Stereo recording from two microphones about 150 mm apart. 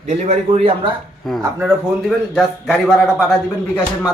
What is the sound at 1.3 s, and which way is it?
Speech, centre (ahead or behind).